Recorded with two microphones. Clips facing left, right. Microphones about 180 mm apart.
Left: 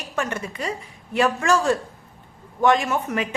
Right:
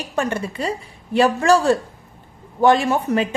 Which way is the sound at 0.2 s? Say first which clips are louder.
Right 4 dB; 30° right (ahead or behind).